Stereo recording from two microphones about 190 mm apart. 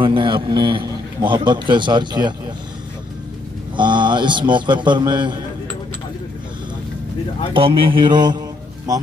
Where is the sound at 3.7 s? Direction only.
25° right (ahead or behind).